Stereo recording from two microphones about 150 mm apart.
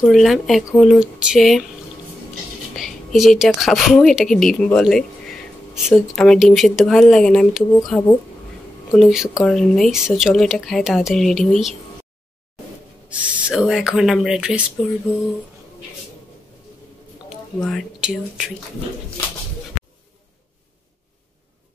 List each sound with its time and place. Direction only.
0.0 s speech: centre (ahead or behind)
2.7 s speech: centre (ahead or behind)
13.1 s speech: 5° right (ahead or behind)
17.6 s speech: 5° left (ahead or behind)